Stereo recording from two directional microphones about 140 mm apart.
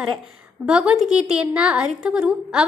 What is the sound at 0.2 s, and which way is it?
A woman's voice, 5° right (ahead or behind).